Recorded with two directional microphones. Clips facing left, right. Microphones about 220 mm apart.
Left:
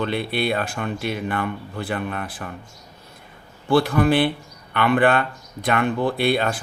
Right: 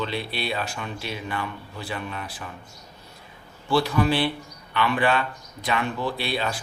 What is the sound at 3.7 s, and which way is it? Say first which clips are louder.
Speech: left 4 dB; 55° left (ahead or behind).